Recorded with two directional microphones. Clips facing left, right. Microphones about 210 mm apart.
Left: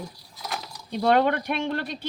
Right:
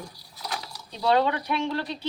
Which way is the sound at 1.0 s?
55° left (ahead or behind).